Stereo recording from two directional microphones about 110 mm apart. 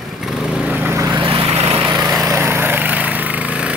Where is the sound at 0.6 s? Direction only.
15° right (ahead or behind).